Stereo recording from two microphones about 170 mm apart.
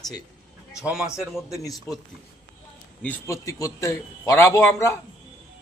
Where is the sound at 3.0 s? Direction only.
15° left (ahead or behind).